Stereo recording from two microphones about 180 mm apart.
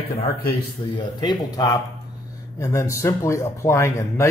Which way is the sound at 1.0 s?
25° left (ahead or behind).